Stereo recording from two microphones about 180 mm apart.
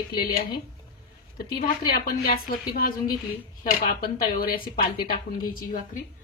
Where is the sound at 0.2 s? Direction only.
55° left (ahead or behind).